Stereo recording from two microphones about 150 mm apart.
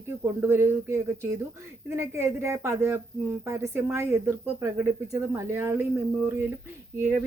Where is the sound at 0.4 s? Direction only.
15° right (ahead or behind).